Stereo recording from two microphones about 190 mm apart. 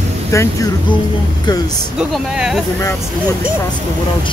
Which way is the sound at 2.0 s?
5° right (ahead or behind).